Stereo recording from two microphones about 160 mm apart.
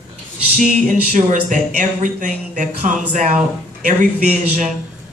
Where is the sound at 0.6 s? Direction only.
55° right (ahead or behind).